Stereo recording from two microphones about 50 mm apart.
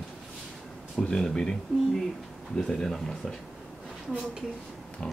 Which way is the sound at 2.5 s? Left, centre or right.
Centre.